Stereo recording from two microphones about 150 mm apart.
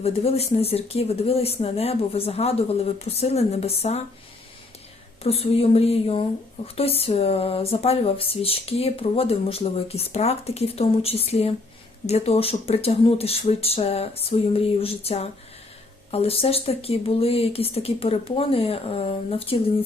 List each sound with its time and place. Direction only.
0.0 s speech: 40° left (ahead or behind)
5.2 s speech: 40° left (ahead or behind)